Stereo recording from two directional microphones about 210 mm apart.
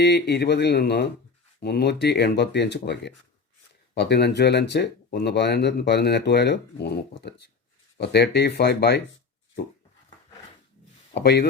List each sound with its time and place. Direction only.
0.0 s speech: 50° left (ahead or behind)
11.1 s speech: 50° left (ahead or behind)